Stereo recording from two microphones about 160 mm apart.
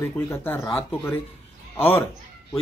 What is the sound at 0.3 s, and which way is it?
Speech, 15° left (ahead or behind).